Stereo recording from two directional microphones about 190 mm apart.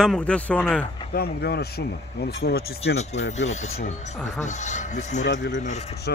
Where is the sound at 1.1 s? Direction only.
55° left (ahead or behind).